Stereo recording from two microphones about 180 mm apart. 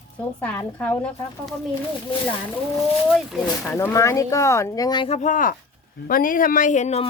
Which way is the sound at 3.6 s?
15° left (ahead or behind).